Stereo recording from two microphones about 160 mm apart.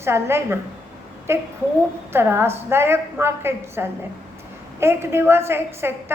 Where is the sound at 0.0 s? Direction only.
15° right (ahead or behind).